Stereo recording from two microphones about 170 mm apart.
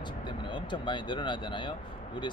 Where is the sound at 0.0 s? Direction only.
25° left (ahead or behind).